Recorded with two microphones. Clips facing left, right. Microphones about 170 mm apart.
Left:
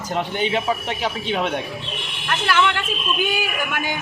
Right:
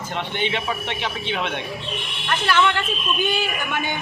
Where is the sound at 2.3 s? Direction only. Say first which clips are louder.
Even; 10° left (ahead or behind).